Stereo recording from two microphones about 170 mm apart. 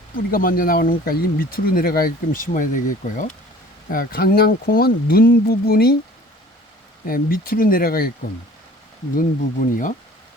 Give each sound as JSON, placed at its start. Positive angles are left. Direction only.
{"t": 0.3, "sound": "speech", "side_deg": 55}
{"t": 7.0, "sound": "speech", "side_deg": 55}
{"t": 9.1, "sound": "speech", "side_deg": 50}